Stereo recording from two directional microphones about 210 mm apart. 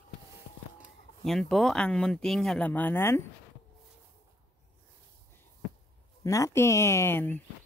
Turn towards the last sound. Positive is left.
turn(degrees=10)  # may be behind; listen again after turning